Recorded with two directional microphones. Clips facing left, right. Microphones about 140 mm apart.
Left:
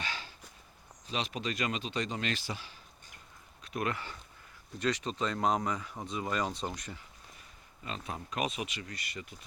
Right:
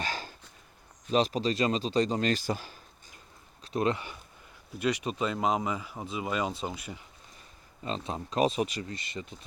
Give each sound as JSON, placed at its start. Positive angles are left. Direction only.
{"t": 0.0, "sound": "a sound", "side_deg": -40}
{"t": 1.1, "sound": "speech", "side_deg": -35}
{"t": 3.6, "sound": "speech", "side_deg": -30}
{"t": 7.9, "sound": "speech", "side_deg": -25}